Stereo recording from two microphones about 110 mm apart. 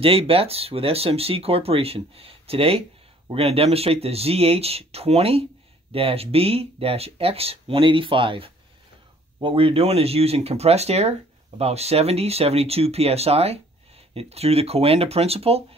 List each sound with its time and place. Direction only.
0.0 s speech: 60° right (ahead or behind)